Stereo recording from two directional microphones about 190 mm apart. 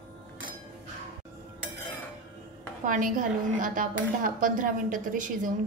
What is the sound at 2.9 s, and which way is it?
Speech, 45° right (ahead or behind).